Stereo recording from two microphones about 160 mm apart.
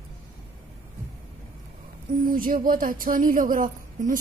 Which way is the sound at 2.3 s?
60° right (ahead or behind).